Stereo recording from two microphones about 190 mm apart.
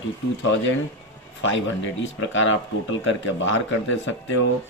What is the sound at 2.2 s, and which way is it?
Speech, 90° left.